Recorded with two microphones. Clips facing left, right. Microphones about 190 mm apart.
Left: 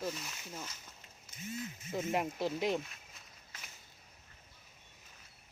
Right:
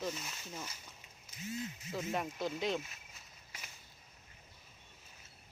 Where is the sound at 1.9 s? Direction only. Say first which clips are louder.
Left 4 dB; 25° left (ahead or behind).